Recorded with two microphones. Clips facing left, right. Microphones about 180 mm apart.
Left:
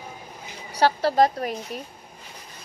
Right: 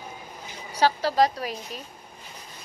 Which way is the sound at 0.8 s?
60° left (ahead or behind).